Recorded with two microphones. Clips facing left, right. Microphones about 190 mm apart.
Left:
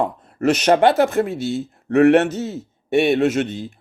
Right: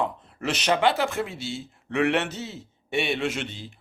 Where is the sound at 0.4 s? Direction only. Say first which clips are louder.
Left 8 dB; 45° left (ahead or behind).